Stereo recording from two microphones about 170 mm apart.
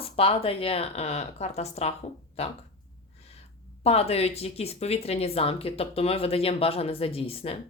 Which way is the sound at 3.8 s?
35° left (ahead or behind).